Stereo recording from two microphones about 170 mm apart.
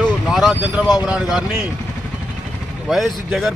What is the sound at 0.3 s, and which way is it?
Speech, centre (ahead or behind).